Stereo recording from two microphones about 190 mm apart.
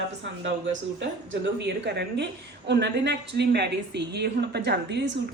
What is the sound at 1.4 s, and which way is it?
A woman's voice, 65° right (ahead or behind).